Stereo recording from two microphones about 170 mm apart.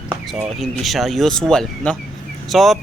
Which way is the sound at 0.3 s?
Centre (ahead or behind).